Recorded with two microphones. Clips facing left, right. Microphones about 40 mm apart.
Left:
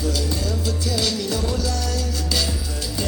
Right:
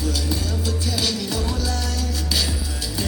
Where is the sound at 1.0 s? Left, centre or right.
Centre.